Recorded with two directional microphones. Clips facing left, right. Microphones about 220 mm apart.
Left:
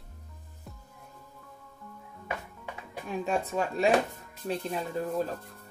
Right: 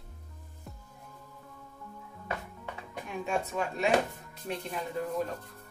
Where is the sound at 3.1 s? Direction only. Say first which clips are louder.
Left 3 dB; 35° left (ahead or behind).